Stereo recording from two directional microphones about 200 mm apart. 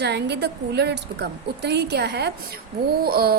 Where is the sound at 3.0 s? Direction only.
50° right (ahead or behind).